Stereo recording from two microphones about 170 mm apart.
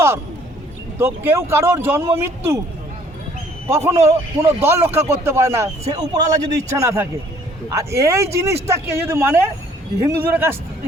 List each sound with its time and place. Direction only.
0.9 s speech: 10° right (ahead or behind)
3.7 s a man's voice: 15° right (ahead or behind)